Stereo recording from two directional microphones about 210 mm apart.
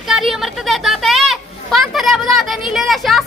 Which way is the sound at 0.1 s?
Centre (ahead or behind).